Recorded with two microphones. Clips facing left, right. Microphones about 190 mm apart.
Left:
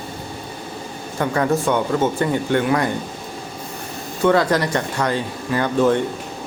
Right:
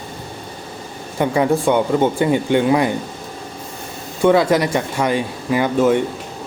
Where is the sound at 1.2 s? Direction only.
15° right (ahead or behind).